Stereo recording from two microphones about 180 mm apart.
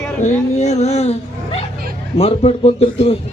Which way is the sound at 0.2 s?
40° left (ahead or behind).